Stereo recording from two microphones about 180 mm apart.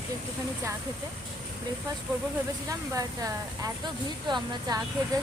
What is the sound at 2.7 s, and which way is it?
Speech, 20° right (ahead or behind).